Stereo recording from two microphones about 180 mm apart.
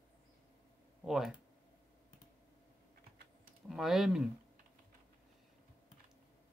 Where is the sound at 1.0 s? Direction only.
Centre (ahead or behind).